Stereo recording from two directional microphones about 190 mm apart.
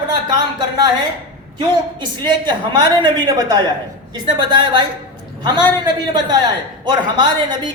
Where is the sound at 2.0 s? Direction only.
25° right (ahead or behind).